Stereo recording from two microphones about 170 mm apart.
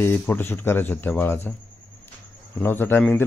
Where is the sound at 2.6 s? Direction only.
10° left (ahead or behind).